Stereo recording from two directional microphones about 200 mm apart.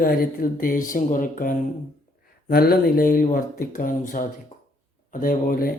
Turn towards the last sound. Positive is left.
turn(degrees=45)  # may be behind; listen again after turning